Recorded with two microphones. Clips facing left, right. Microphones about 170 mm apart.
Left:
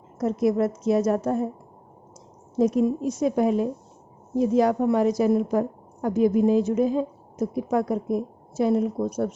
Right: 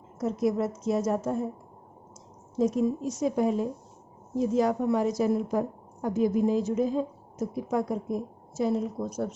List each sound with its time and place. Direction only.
0.2 s a woman's voice: 70° left (ahead or behind)
2.6 s a woman's voice: 65° left (ahead or behind)